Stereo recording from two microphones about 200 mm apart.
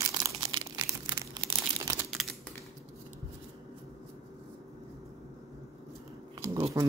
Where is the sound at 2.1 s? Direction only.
Centre (ahead or behind).